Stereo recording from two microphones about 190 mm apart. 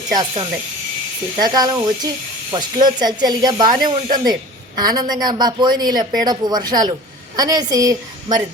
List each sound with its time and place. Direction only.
0.1 s speech: 25° right (ahead or behind)